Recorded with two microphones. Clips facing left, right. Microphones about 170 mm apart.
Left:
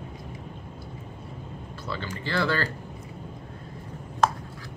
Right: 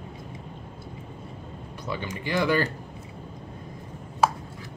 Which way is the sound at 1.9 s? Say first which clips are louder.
Right 2 dB; 15° right (ahead or behind).